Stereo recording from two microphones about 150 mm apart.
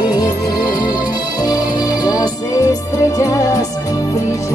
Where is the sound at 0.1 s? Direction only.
25° left (ahead or behind).